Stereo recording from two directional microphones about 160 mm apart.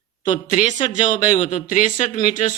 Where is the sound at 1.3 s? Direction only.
50° left (ahead or behind).